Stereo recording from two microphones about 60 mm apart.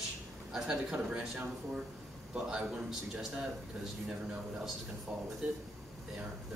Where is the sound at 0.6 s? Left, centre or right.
Centre.